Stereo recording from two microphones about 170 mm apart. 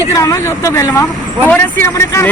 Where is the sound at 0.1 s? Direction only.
20° left (ahead or behind).